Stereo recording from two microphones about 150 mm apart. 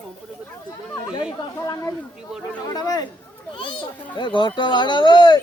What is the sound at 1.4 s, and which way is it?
A child's voice, 20° left (ahead or behind).